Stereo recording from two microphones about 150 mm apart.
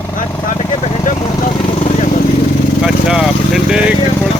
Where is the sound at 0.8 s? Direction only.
50° left (ahead or behind).